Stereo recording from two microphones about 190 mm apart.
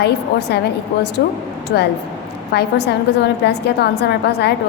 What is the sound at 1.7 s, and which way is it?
A woman's voice, 60° left (ahead or behind).